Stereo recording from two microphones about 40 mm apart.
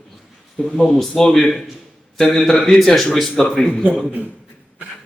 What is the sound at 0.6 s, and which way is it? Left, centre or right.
A man's voice, centre.